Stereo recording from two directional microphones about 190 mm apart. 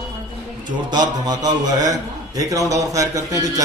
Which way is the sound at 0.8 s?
20° right (ahead or behind).